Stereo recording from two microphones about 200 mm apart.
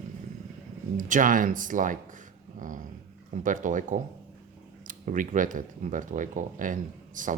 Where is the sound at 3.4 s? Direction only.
40° right (ahead or behind).